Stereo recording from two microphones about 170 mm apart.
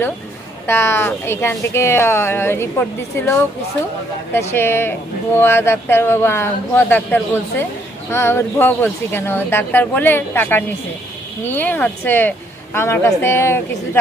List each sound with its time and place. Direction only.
0.7 s speech: 15° left (ahead or behind)
4.4 s speech: 15° left (ahead or behind)